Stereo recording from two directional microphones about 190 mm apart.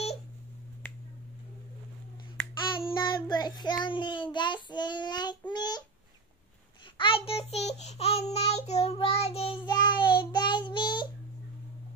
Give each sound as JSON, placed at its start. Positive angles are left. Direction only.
{"t": 2.7, "sound": "child singing", "side_deg": 25}
{"t": 5.5, "sound": "babbling", "side_deg": 20}
{"t": 7.0, "sound": "child singing", "side_deg": 30}